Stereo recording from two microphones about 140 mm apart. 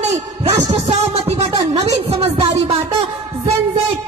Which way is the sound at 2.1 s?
45° right (ahead or behind).